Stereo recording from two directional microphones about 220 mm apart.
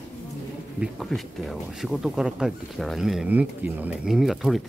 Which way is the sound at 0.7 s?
Centre (ahead or behind).